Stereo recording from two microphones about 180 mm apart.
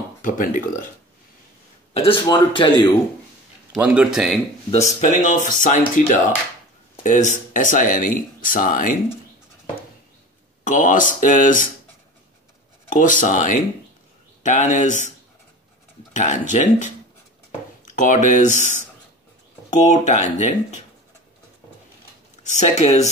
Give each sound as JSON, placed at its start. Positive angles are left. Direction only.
{"t": 0.2, "sound": "speech", "side_deg": 50}
{"t": 2.0, "sound": "a man's voice", "side_deg": 25}
{"t": 3.7, "sound": "speech", "side_deg": -10}
{"t": 4.6, "sound": "speech", "side_deg": 40}
{"t": 10.6, "sound": "speech", "side_deg": 45}
{"t": 12.9, "sound": "speech", "side_deg": 45}
{"t": 22.4, "sound": "speech", "side_deg": 40}